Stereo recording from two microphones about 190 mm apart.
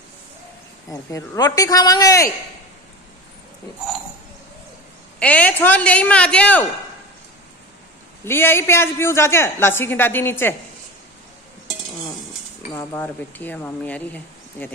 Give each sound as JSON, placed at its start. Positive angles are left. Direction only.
{"t": 1.1, "sound": "a woman's voice", "side_deg": 15}
{"t": 5.2, "sound": "a woman's voice", "side_deg": 10}
{"t": 8.3, "sound": "a woman's voice", "side_deg": 10}
{"t": 12.7, "sound": "a woman's voice", "side_deg": 15}